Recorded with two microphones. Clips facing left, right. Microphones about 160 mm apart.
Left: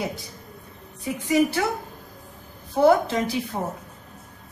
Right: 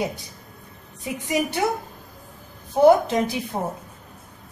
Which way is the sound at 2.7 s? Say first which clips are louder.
Right 3 dB; 20° right (ahead or behind).